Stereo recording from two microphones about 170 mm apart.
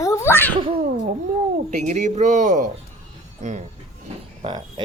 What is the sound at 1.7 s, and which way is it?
A man's voice, 45° right (ahead or behind).